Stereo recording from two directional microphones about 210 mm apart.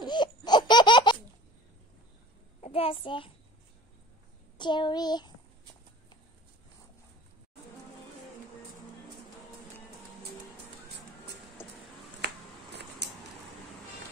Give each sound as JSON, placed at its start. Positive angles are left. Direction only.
{"t": 0.0, "sound": "laughter", "side_deg": 20}
{"t": 2.6, "sound": "a child's voice", "side_deg": 25}
{"t": 4.6, "sound": "child singing", "side_deg": 20}
{"t": 11.6, "sound": "a sound", "side_deg": 10}